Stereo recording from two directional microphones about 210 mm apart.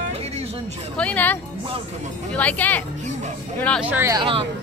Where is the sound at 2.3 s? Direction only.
5° left (ahead or behind).